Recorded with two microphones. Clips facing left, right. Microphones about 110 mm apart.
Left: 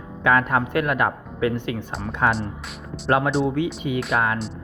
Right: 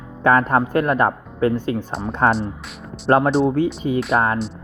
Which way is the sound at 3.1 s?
35° right (ahead or behind).